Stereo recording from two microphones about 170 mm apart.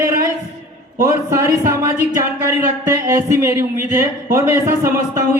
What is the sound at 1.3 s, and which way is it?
Speech, 15° right (ahead or behind).